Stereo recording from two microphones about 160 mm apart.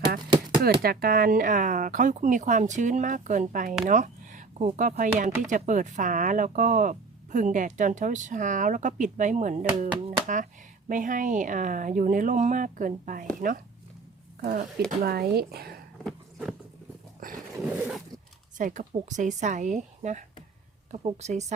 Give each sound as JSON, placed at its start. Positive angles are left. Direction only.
{"t": 0.6, "sound": "speech", "side_deg": -75}
{"t": 14.8, "sound": "speech", "side_deg": -70}
{"t": 16.0, "sound": "a sound", "side_deg": 0}
{"t": 17.6, "sound": "zipper", "side_deg": -5}
{"t": 18.5, "sound": "speech", "side_deg": -50}